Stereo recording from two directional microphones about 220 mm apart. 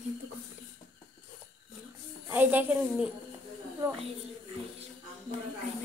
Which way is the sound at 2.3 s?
10° right (ahead or behind).